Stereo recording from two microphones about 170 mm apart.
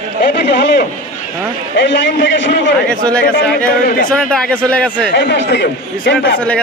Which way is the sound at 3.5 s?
55° left (ahead or behind).